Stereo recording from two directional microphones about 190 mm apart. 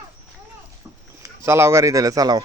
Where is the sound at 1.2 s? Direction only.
15° right (ahead or behind).